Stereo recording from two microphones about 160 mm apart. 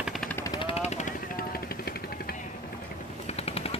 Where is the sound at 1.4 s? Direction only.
70° left (ahead or behind).